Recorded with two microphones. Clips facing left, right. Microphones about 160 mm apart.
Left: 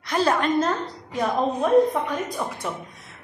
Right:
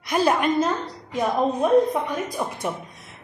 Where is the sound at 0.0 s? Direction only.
15° right (ahead or behind).